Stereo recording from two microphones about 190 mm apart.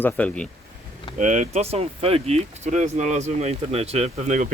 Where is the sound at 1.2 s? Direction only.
40° right (ahead or behind).